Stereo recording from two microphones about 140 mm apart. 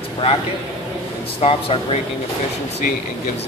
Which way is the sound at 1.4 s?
45° left (ahead or behind).